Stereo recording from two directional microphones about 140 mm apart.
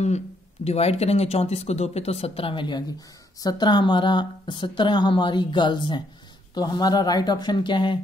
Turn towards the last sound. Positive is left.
turn(degrees=35)  # may be behind; listen again after turning